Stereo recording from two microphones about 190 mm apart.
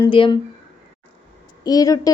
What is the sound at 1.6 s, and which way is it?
Speech, 20° left (ahead or behind).